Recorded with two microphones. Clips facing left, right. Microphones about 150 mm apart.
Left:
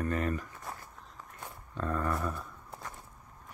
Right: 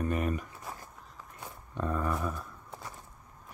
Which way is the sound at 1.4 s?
10° right (ahead or behind).